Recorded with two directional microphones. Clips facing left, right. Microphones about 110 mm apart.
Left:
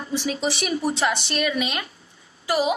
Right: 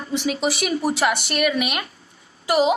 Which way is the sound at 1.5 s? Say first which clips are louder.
Right 2 dB; 20° right (ahead or behind).